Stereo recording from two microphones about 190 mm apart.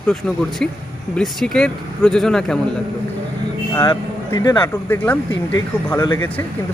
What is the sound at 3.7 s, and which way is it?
Speech, 15° left (ahead or behind).